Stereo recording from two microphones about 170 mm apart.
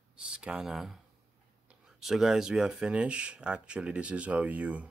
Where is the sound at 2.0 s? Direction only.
Centre (ahead or behind).